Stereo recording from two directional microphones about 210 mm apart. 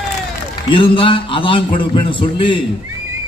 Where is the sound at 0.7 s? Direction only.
25° left (ahead or behind).